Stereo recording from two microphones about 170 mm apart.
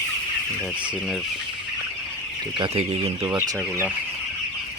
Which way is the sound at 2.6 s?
35° right (ahead or behind).